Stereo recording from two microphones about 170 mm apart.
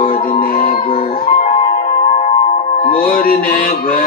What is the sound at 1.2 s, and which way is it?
Music, 55° left (ahead or behind).